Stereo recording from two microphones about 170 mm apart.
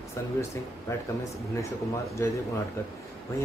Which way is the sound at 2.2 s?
15° left (ahead or behind).